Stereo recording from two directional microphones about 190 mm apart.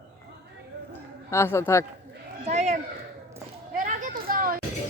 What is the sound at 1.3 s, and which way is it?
Speech, 15° left (ahead or behind).